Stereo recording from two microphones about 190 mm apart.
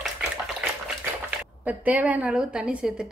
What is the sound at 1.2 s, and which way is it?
A woman's voice, 10° right (ahead or behind).